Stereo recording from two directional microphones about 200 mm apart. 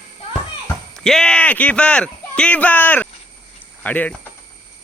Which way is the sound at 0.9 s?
Centre (ahead or behind).